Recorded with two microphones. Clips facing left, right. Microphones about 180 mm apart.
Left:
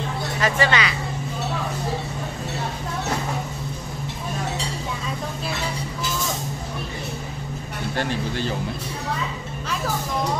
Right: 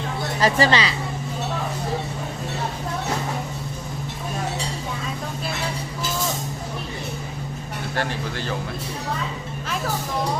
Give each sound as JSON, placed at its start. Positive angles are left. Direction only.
{"t": 0.4, "sound": "speech", "side_deg": -35}